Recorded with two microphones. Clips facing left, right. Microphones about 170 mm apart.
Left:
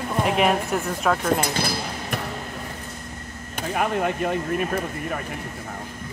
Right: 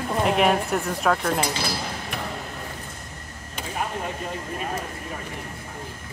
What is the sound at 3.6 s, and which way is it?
Speech, 65° left (ahead or behind).